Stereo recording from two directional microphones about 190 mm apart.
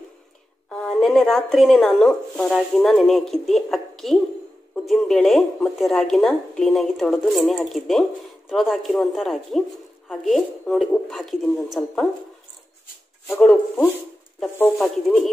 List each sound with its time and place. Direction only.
0.7 s a woman's voice: 5° left (ahead or behind)
13.3 s a woman's voice: centre (ahead or behind)